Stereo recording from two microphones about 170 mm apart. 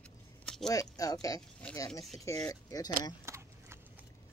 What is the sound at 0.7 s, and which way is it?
Speech, 20° left (ahead or behind).